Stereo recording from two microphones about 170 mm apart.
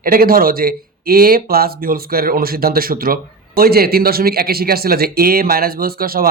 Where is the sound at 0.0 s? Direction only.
60° right (ahead or behind).